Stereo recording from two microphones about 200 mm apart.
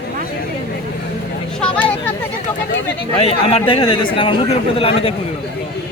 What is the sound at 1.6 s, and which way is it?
Vehicle, 5° left (ahead or behind).